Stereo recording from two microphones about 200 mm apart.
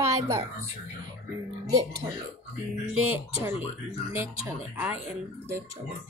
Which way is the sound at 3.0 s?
10° right (ahead or behind).